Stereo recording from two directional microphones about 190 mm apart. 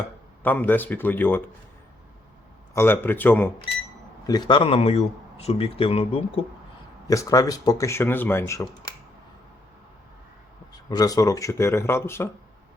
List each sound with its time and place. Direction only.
0.4 s speech: 10° left (ahead or behind)
2.7 s speech: 10° left (ahead or behind)
4.3 s speech: 25° left (ahead or behind)
7.1 s speech: 20° left (ahead or behind)
10.8 s speech: 20° left (ahead or behind)